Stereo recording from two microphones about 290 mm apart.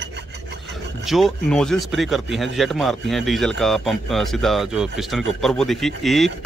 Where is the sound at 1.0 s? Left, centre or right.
Centre.